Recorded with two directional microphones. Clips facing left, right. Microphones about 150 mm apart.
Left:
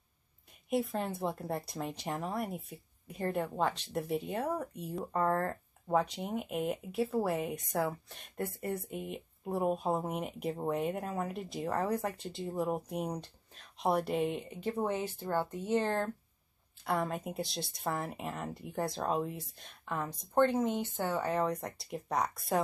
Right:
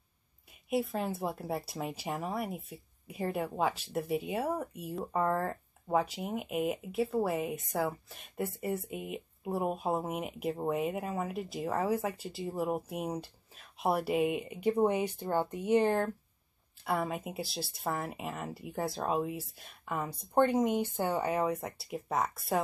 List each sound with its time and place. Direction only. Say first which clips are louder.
0.7 s speech: right 1 dB; 5° right (ahead or behind)